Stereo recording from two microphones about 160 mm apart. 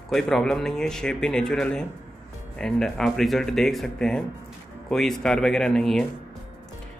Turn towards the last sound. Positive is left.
turn(degrees=5)  # may be behind; listen again after turning